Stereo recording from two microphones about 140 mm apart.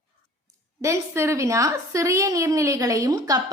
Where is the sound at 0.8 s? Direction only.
20° right (ahead or behind).